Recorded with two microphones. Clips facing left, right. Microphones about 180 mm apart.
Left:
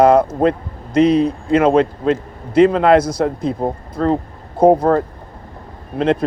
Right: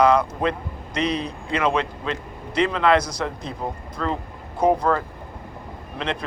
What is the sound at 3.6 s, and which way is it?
Speech, 45° left (ahead or behind).